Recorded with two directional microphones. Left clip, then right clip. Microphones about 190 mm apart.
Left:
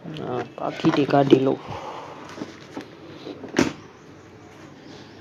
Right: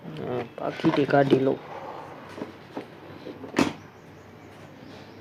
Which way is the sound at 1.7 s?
15° left (ahead or behind).